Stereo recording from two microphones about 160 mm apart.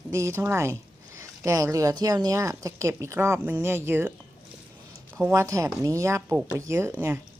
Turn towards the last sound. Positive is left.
turn(degrees=-15)  # may be behind; listen again after turning